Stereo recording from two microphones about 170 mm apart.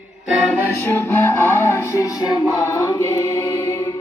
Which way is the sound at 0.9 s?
15° left (ahead or behind).